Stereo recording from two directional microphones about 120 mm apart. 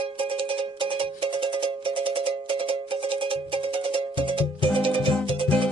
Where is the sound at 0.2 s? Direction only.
45° right (ahead or behind).